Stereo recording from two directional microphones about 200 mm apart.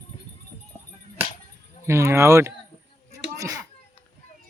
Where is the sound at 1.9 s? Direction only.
15° right (ahead or behind).